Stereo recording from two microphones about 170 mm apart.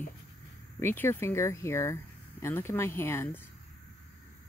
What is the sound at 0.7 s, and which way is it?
Speech, 15° left (ahead or behind).